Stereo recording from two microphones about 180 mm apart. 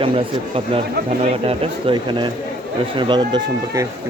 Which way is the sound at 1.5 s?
25° right (ahead or behind).